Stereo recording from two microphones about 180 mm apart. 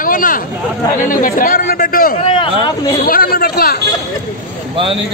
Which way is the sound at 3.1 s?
55° left (ahead or behind).